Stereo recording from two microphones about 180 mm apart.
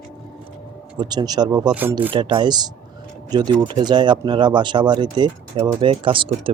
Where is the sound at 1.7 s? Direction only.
10° right (ahead or behind).